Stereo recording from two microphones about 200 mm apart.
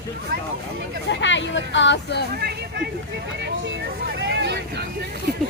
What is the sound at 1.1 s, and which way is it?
Speech, 65° left (ahead or behind).